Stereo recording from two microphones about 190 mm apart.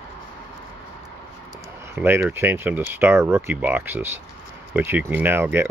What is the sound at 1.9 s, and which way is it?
Speech, 10° right (ahead or behind).